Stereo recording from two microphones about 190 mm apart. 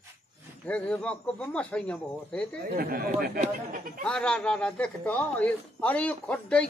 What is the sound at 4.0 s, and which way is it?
A man's voice, 5° left (ahead or behind).